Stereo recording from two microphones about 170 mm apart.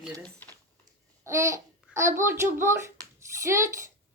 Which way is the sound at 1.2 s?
15° right (ahead or behind).